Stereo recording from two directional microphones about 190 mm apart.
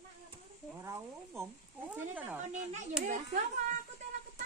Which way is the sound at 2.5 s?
40° right (ahead or behind).